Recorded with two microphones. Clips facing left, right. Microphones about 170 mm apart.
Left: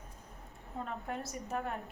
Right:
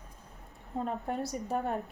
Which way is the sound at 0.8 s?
35° right (ahead or behind).